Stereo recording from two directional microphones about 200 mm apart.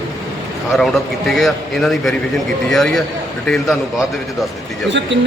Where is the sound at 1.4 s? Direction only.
Centre (ahead or behind).